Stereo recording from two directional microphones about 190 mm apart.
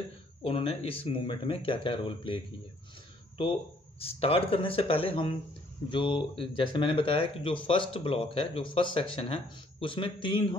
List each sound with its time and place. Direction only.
0.4 s speech: 30° left (ahead or behind)
4.0 s speech: 30° left (ahead or behind)